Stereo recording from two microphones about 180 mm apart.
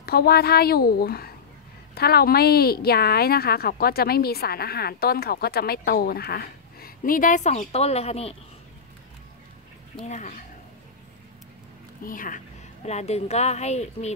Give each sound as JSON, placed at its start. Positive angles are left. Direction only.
{"t": 0.0, "sound": "a woman's voice", "side_deg": 60}
{"t": 9.9, "sound": "speech", "side_deg": 40}
{"t": 12.0, "sound": "speech", "side_deg": 50}
{"t": 12.8, "sound": "speech", "side_deg": 35}